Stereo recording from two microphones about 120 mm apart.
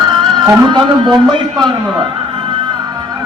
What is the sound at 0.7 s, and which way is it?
A man's voice, 40° right (ahead or behind).